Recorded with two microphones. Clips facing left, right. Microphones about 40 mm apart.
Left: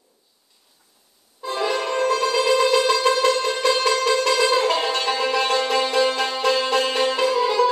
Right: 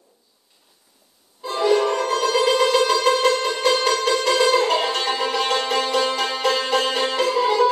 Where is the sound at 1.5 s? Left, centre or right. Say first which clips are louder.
Right 5 dB; left.